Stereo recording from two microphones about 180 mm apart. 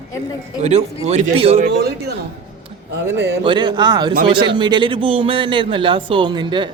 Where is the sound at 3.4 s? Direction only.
25° right (ahead or behind).